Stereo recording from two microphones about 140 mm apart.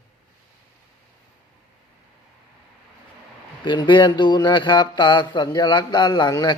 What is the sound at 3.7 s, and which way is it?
Speech, 35° left (ahead or behind).